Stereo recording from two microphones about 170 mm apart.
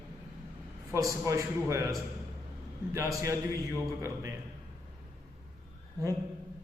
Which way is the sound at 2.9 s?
15° right (ahead or behind).